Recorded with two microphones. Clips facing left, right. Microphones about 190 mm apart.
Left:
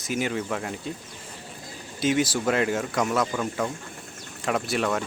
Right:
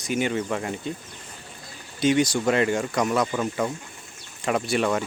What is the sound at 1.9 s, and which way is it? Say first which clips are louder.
Speech: right 3 dB; 5° left (ahead or behind).